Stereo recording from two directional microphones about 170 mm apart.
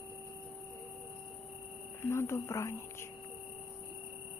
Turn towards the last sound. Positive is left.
turn(degrees=15)  # may be behind; listen again after turning